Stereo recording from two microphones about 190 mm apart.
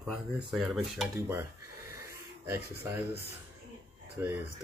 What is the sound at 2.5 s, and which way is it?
Speech, 15° right (ahead or behind).